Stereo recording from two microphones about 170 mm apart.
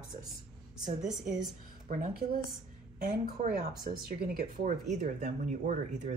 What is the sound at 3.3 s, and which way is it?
Speech, 45° right (ahead or behind).